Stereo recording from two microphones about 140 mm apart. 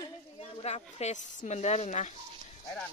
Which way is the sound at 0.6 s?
50° left (ahead or behind).